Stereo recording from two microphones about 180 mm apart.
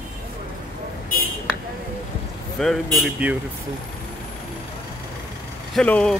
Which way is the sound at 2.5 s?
Centre (ahead or behind).